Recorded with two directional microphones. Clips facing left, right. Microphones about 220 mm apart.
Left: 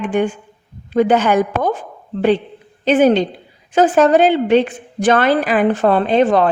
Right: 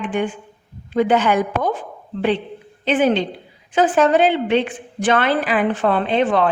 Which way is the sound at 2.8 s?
40° left (ahead or behind).